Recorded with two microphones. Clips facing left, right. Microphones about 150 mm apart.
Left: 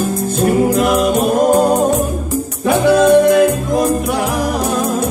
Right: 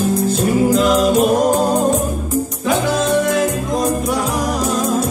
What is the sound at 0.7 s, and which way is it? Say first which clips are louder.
Music: even; 60° left (ahead or behind).